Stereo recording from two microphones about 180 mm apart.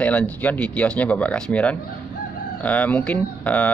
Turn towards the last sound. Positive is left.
turn(degrees=10)  # may be behind; listen again after turning